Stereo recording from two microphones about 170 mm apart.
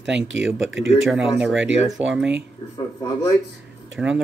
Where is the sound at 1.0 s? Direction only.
5° right (ahead or behind).